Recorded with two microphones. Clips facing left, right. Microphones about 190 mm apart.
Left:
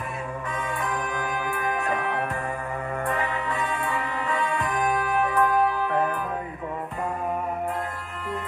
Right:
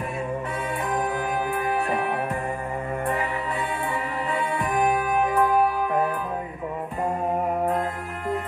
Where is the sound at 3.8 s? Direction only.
20° right (ahead or behind).